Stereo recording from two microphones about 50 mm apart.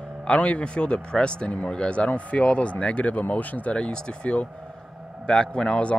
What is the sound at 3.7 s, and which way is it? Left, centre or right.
Speech, centre.